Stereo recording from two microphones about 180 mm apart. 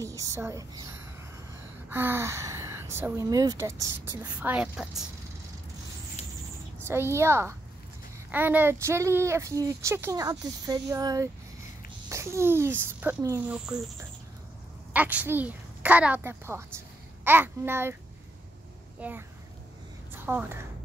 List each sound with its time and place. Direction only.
0.0 s speech: 15° right (ahead or behind)
1.9 s speech: 10° right (ahead or behind)
6.2 s owl: 35° left (ahead or behind)
6.8 s speech: 15° right (ahead or behind)
14.9 s a child's voice: 10° right (ahead or behind)
18.9 s a child's voice: 10° right (ahead or behind)
20.2 s speech: 10° right (ahead or behind)